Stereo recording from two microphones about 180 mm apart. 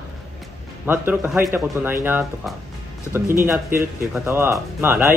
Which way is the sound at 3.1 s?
15° right (ahead or behind).